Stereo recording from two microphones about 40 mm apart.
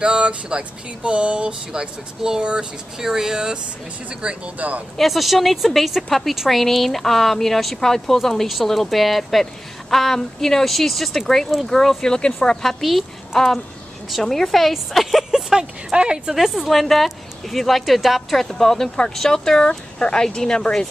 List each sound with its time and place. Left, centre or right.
0.0 s speech: right
1.7 s speech: centre
4.1 s speech: right
4.6 s speech: right
4.9 s speech: centre
12.6 s a woman's voice: centre
15.5 s speech: right
16.3 s speech: centre